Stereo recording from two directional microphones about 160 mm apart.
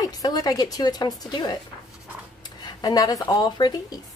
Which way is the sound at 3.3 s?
25° left (ahead or behind).